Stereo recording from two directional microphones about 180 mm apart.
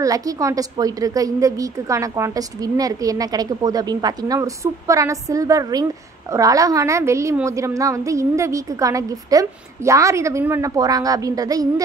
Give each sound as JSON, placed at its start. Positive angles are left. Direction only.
{"t": 0.0, "sound": "a woman's voice", "side_deg": -20}